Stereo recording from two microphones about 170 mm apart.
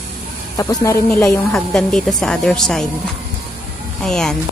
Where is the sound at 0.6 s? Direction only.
20° left (ahead or behind).